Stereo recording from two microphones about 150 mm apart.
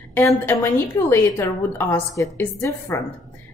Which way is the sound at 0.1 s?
15° left (ahead or behind).